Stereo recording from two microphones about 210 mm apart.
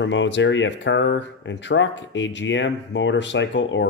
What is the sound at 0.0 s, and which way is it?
Speech, 60° left (ahead or behind).